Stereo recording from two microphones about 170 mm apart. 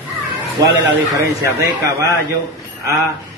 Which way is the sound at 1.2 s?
15° right (ahead or behind).